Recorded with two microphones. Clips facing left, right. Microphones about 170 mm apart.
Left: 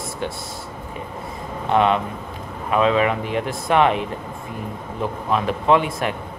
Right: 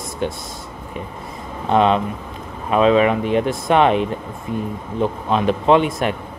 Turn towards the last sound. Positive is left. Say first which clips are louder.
# right 3 dB
turn(degrees=-20)  # may be behind; listen again after turning